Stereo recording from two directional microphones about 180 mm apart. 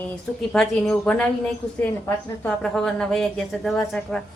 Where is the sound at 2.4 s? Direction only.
5° left (ahead or behind).